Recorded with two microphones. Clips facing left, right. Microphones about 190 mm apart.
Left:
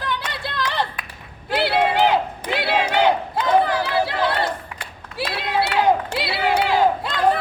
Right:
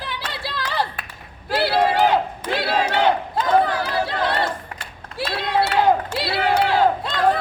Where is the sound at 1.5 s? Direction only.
Centre (ahead or behind).